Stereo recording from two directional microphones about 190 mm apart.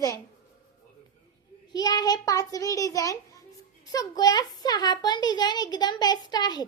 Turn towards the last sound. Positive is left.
turn(degrees=20)  # may be behind; listen again after turning